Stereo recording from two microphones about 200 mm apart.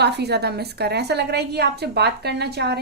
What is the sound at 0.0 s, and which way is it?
A woman's voice, 55° right (ahead or behind).